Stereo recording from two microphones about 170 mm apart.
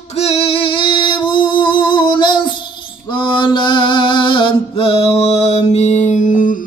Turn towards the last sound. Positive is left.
turn(degrees=50)  # may be behind; listen again after turning